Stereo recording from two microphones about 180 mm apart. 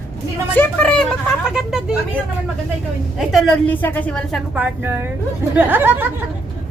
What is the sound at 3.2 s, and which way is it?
A woman's voice, centre (ahead or behind).